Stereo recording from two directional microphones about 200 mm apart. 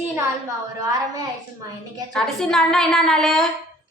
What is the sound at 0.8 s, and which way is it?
Speech, 20° right (ahead or behind).